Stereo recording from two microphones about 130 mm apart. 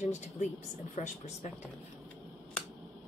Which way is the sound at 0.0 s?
65° left (ahead or behind).